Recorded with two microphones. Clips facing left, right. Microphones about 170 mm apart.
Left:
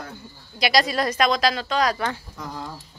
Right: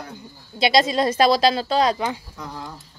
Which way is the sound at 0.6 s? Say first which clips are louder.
Right 3 dB; 25° right (ahead or behind).